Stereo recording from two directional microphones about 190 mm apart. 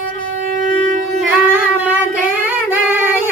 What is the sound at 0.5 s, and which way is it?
Shofar, 45° right (ahead or behind).